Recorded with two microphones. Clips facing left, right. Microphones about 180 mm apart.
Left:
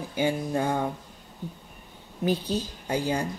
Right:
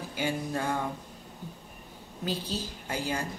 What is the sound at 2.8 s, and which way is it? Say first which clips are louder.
Speech: left 6 dB; 25° left (ahead or behind).